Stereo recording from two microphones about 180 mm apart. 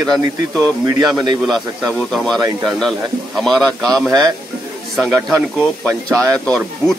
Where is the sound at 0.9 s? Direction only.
20° right (ahead or behind).